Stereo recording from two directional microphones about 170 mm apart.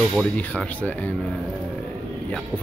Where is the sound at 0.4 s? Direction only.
10° left (ahead or behind).